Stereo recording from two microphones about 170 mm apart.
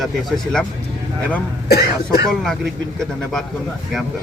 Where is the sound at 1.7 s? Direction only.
65° left (ahead or behind).